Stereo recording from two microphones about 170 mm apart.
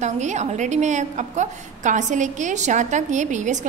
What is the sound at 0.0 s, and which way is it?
A woman's voice, 45° right (ahead or behind).